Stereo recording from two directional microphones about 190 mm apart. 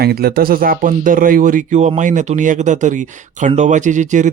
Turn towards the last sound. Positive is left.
turn(degrees=-40)  # may be behind; listen again after turning